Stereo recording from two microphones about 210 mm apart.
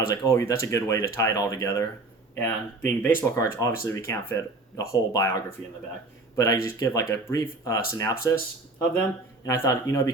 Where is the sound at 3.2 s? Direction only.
15° left (ahead or behind).